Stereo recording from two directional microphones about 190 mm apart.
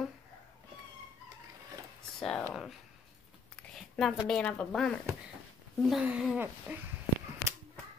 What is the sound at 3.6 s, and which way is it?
Speech, 5° left (ahead or behind).